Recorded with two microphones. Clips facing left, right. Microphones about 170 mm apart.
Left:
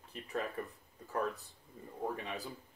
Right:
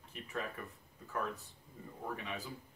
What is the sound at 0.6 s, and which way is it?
Speech, 35° left (ahead or behind).